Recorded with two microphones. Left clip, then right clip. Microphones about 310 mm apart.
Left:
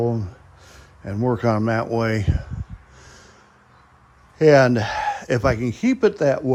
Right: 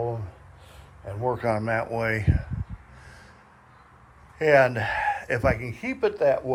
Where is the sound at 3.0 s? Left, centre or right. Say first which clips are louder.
Left 4 dB; left.